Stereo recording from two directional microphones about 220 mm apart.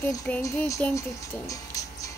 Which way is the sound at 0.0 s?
10° left (ahead or behind).